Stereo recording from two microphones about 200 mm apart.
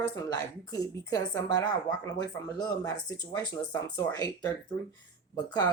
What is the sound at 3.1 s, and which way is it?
Speech, 20° left (ahead or behind).